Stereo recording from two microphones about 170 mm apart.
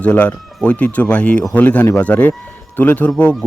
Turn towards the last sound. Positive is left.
turn(degrees=5)  # may be behind; listen again after turning